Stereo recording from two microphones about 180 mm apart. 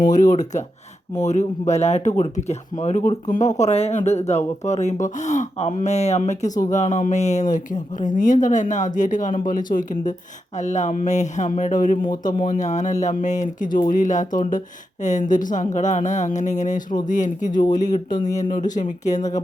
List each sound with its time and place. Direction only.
0.0 s speech: 45° left (ahead or behind)